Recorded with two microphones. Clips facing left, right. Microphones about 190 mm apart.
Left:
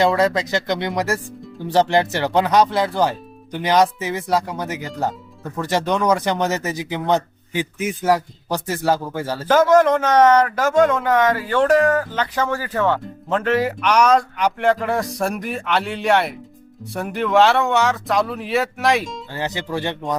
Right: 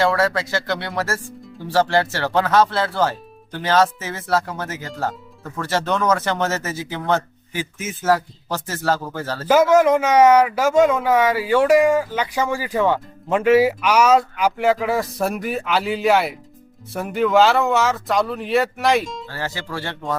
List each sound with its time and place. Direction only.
0.0 s speech: 20° left (ahead or behind)
9.5 s a man's voice: 10° right (ahead or behind)
19.3 s speech: 20° left (ahead or behind)